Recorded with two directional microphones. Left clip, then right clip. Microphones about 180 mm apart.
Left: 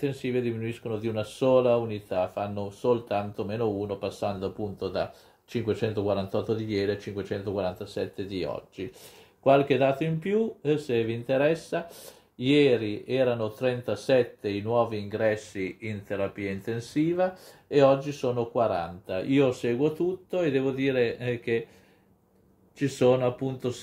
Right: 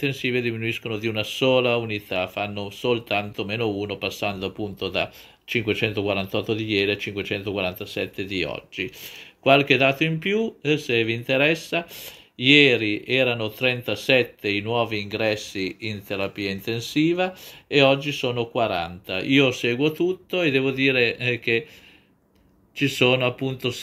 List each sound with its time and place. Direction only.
0.0 s speech: 20° right (ahead or behind)
15.5 s speech: 40° right (ahead or behind)
17.7 s speech: 15° right (ahead or behind)
22.8 s speech: 20° right (ahead or behind)